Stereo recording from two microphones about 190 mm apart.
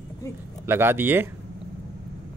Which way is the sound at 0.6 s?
10° right (ahead or behind).